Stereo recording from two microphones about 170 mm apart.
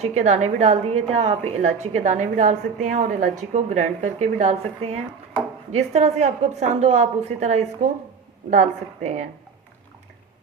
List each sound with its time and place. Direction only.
0.0 s a woman's voice: 40° right (ahead or behind)